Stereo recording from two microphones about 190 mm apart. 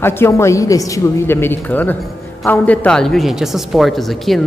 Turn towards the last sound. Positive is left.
turn(degrees=0)  # may be behind; listen again after turning